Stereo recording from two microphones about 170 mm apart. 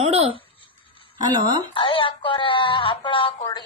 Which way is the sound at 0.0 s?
35° right (ahead or behind).